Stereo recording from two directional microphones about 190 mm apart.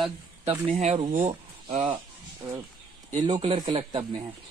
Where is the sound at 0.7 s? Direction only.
35° right (ahead or behind).